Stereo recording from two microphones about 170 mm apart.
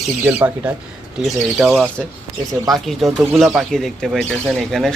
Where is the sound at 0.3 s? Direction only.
15° right (ahead or behind).